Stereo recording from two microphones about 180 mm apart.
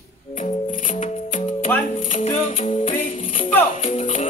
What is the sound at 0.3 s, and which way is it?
Music, 45° left (ahead or behind).